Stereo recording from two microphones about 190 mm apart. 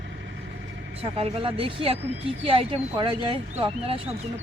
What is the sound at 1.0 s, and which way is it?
Speech, 30° right (ahead or behind).